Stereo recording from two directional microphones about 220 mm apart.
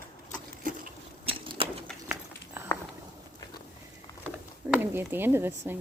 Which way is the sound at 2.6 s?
10° right (ahead or behind).